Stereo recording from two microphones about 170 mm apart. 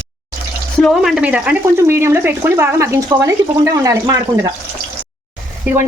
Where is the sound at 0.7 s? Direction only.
Centre (ahead or behind); by 4.2 s 20° right (ahead or behind).